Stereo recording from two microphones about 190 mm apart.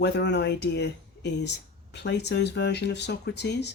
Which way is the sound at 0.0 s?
60° left (ahead or behind).